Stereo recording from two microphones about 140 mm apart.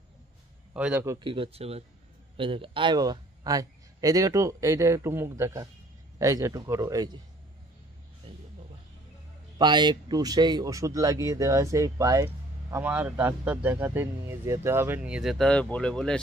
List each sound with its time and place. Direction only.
0.7 s speech: 10° right (ahead or behind)
1.2 s a man's voice: 40° right (ahead or behind)
8.2 s a sound: 40° right (ahead or behind)
9.6 s a man's voice: 30° right (ahead or behind)
12.7 s speech: 10° right (ahead or behind); by 16.2 s 5° left (ahead or behind)